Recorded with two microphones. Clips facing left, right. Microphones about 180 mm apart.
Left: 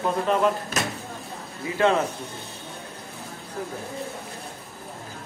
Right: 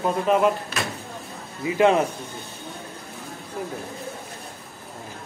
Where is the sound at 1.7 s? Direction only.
15° right (ahead or behind).